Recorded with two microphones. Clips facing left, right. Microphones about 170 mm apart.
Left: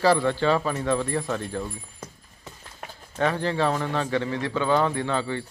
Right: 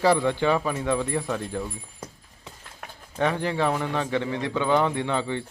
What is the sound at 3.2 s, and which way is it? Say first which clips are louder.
A man's voice: even; 15° right (ahead or behind).